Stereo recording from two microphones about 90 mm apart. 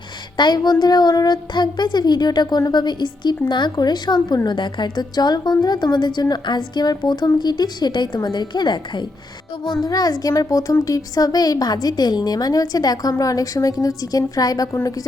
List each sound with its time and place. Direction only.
0.3 s a woman's voice: 55° left (ahead or behind)
9.8 s a woman's voice: 45° left (ahead or behind)